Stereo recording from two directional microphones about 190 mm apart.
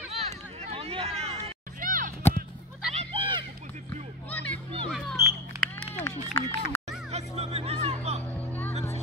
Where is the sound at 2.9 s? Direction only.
30° right (ahead or behind).